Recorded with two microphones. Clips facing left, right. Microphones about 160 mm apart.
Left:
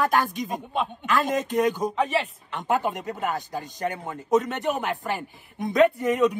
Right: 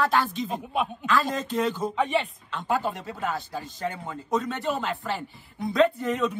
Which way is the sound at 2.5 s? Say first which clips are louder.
Left 2 dB; 20° left (ahead or behind).